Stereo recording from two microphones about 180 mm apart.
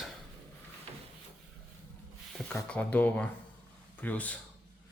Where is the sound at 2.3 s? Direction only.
5° left (ahead or behind).